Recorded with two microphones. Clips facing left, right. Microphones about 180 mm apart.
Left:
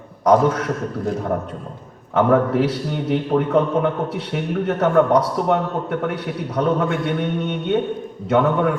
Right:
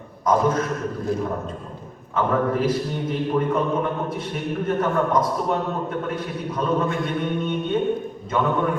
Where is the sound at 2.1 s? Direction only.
75° left (ahead or behind).